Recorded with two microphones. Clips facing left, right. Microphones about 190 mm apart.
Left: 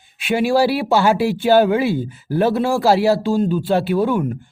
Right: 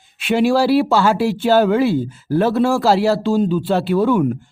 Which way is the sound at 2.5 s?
Centre (ahead or behind).